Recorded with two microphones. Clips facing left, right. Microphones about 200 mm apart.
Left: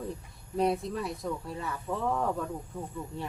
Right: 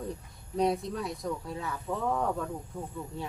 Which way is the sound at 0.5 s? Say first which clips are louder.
Even; centre (ahead or behind).